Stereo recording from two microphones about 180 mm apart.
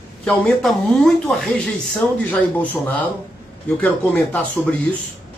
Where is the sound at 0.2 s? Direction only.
5° left (ahead or behind).